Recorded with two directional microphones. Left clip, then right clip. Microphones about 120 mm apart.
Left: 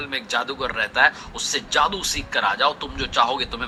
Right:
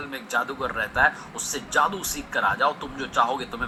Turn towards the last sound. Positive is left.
turn(degrees=25)  # may be behind; listen again after turning